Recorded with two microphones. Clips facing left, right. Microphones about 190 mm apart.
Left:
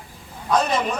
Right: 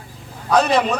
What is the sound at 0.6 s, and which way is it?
Speech, 70° right (ahead or behind).